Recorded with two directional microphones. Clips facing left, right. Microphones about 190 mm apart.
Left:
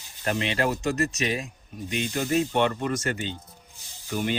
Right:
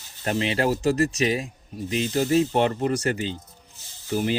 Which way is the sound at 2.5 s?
35° right (ahead or behind).